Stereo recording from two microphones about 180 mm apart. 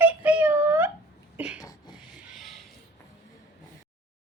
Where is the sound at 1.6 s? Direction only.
20° left (ahead or behind).